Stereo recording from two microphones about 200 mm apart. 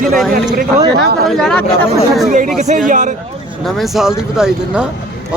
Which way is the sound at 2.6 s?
40° right (ahead or behind).